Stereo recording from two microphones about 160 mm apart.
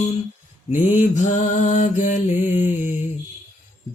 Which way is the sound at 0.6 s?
50° left (ahead or behind).